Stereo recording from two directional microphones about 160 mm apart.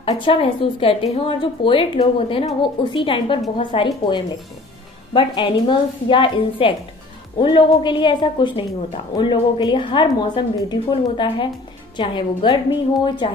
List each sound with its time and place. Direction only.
0.0 s a woman's voice: 35° left (ahead or behind)